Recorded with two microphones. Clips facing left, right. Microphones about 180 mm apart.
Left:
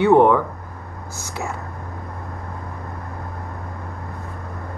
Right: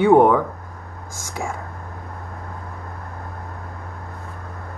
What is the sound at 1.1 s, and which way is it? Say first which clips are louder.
Speech: even; 50° right (ahead or behind).